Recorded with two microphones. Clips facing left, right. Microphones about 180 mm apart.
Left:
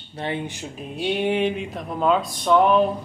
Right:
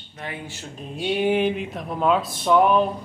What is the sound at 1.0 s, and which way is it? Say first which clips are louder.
Speech: right 1 dB; centre (ahead or behind).